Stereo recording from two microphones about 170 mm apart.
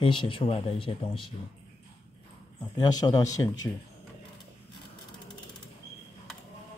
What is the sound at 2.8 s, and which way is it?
Speech, 20° left (ahead or behind).